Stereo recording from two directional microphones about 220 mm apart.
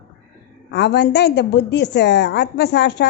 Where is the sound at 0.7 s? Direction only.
50° left (ahead or behind).